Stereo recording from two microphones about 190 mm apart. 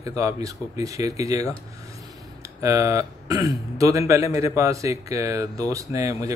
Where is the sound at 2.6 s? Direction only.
15° right (ahead or behind).